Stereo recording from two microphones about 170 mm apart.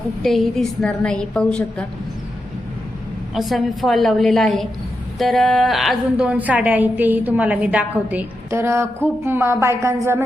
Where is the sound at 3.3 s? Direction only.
Centre (ahead or behind).